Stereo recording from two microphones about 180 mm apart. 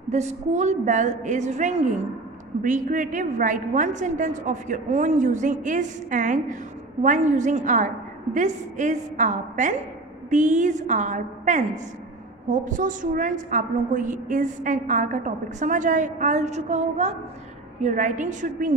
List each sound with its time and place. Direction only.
0.1 s a woman's voice: 40° right (ahead or behind)